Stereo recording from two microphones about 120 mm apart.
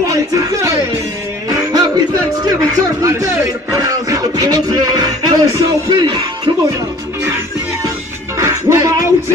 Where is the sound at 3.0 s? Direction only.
25° right (ahead or behind).